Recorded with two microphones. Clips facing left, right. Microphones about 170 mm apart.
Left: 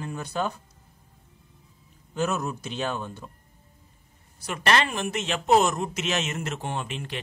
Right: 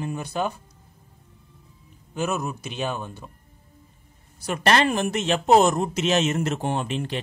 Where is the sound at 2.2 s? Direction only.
10° right (ahead or behind).